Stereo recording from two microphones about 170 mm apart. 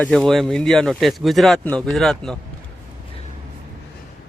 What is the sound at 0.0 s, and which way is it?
Speech, 5° left (ahead or behind).